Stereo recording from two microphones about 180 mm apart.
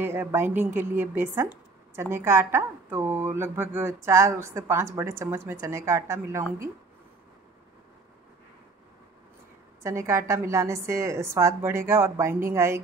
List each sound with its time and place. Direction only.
0.0 s a woman's voice: 10° right (ahead or behind)
9.8 s a woman's voice: 15° right (ahead or behind)